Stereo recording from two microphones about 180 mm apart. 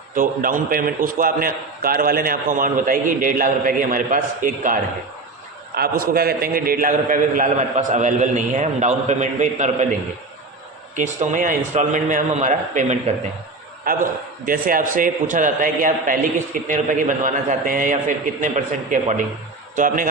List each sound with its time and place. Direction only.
0.2 s a man's voice: 50° right (ahead or behind)
10.9 s a man's voice: 45° right (ahead or behind)